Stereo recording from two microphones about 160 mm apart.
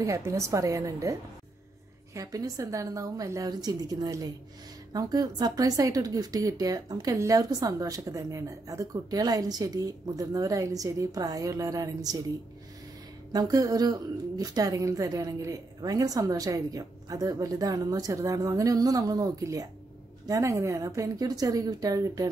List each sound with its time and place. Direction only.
0.0 s a woman's voice: 20° right (ahead or behind)
2.1 s a woman's voice: 20° right (ahead or behind)
13.3 s a woman's voice: 20° right (ahead or behind)